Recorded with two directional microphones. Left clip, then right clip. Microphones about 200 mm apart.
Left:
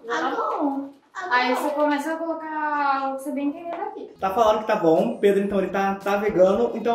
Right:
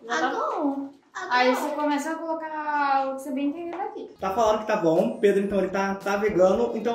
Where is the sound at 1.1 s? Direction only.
20° right (ahead or behind).